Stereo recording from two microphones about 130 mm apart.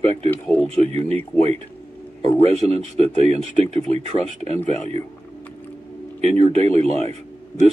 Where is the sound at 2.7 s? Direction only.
50° right (ahead or behind).